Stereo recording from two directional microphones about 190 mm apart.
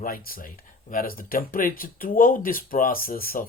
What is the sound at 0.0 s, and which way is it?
Speech, 50° left (ahead or behind).